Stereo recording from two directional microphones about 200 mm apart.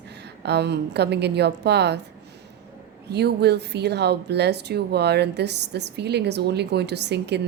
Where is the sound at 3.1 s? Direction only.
55° right (ahead or behind).